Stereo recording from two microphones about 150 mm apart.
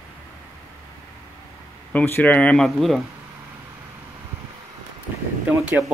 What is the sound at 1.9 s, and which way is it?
Speech, 10° left (ahead or behind).